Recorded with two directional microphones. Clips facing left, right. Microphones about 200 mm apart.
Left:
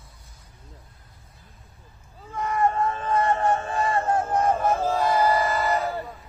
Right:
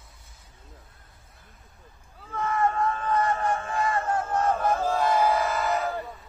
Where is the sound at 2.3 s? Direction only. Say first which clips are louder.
Left 2 dB; 15° left (ahead or behind); by 5.9 s centre (ahead or behind).